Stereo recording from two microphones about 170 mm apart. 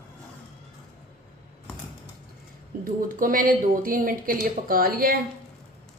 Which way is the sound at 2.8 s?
55° right (ahead or behind).